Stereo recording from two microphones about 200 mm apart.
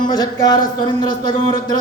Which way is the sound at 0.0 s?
20° left (ahead or behind).